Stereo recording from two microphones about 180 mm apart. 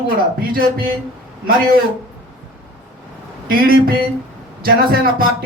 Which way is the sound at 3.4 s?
55° right (ahead or behind).